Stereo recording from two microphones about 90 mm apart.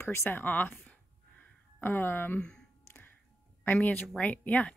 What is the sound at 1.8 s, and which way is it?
Speech, 25° left (ahead or behind).